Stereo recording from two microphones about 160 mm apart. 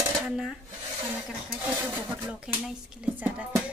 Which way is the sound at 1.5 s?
10° right (ahead or behind).